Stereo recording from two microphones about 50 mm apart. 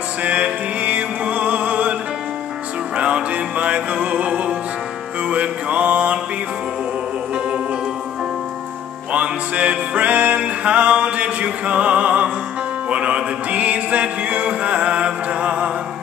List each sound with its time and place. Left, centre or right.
0.2 s music: right
3.0 s music: right
5.3 s mantra: right
9.1 s music: right